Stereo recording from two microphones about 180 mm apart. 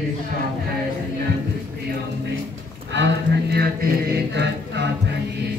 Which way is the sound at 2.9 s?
75° right (ahead or behind).